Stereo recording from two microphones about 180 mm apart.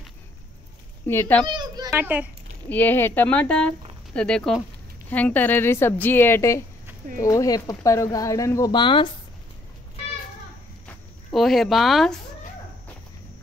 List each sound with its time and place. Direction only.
1.0 s a woman's voice: 15° left (ahead or behind)
1.5 s children playing: 25° right (ahead or behind)
1.9 s a child's voice: 10° right (ahead or behind)
2.7 s a woman's voice: 10° left (ahead or behind); by 9.1 s 25° left (ahead or behind)
11.3 s speech: centre (ahead or behind)